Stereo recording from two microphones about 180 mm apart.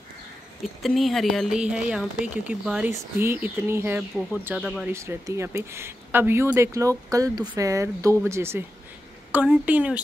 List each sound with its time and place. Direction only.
0.8 s speech: centre (ahead or behind)
4.9 s speech: 15° right (ahead or behind)